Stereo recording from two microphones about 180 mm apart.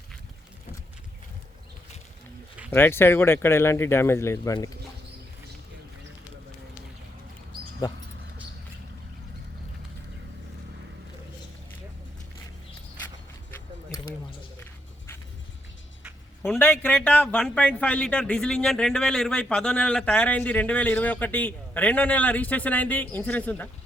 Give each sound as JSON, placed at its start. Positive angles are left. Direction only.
{"t": 2.6, "sound": "speech", "side_deg": 10}
{"t": 13.9, "sound": "a sound", "side_deg": 25}
{"t": 14.6, "sound": "music", "side_deg": 15}
{"t": 16.6, "sound": "speech", "side_deg": 10}